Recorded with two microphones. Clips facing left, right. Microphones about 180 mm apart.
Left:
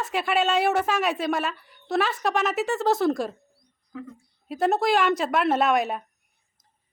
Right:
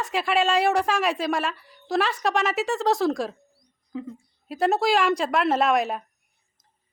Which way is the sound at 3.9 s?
20° right (ahead or behind).